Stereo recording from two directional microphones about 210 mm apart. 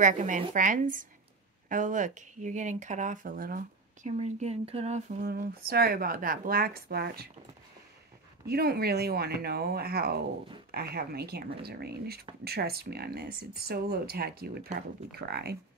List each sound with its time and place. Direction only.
0.0 s speech: 35° right (ahead or behind)
8.5 s speech: 45° right (ahead or behind)